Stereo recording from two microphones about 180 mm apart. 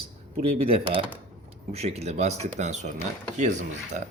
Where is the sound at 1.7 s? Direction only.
35° right (ahead or behind).